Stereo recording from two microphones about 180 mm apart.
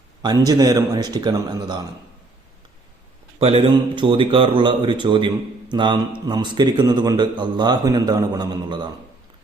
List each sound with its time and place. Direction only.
0.2 s a man's voice: 20° right (ahead or behind)
3.3 s a man's voice: 30° right (ahead or behind)